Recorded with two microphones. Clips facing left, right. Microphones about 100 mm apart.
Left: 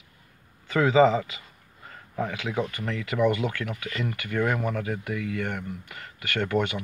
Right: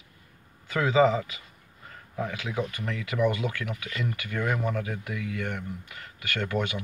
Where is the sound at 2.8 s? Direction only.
20° left (ahead or behind).